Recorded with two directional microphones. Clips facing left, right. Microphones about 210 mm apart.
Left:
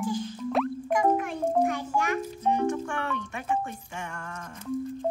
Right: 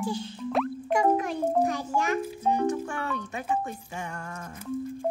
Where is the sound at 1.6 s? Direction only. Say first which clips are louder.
Even; 35° right (ahead or behind).